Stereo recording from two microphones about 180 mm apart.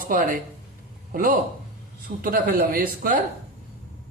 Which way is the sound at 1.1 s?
50° right (ahead or behind).